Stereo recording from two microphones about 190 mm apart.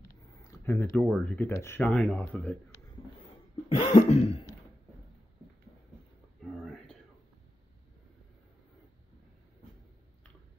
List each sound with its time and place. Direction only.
0.1 s speech: 15° left (ahead or behind)
3.6 s throat clearing: 35° left (ahead or behind)